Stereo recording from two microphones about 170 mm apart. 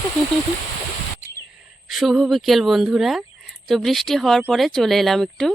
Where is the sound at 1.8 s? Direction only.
Centre (ahead or behind).